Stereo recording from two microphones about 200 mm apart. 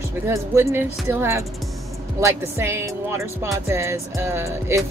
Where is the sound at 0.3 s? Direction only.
15° right (ahead or behind).